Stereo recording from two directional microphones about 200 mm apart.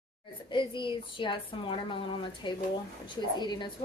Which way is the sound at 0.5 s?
25° left (ahead or behind).